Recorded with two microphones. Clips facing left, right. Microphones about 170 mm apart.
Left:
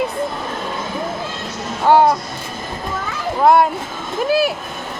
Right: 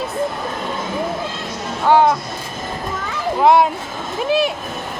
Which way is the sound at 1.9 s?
10° left (ahead or behind).